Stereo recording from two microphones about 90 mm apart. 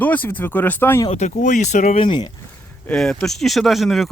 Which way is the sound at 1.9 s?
75° left (ahead or behind).